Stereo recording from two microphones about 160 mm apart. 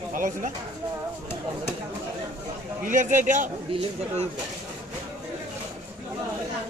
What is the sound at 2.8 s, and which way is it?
Speech, 55° right (ahead or behind).